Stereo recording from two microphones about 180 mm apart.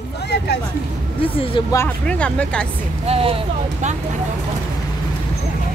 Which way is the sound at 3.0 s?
30° right (ahead or behind).